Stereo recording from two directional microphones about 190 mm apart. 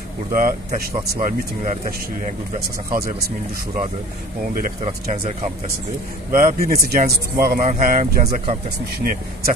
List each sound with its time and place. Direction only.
0.3 s speech: 45° right (ahead or behind)
5.1 s speech: 35° right (ahead or behind)
6.3 s speech: 50° right (ahead or behind)
9.0 s speech: 50° right (ahead or behind)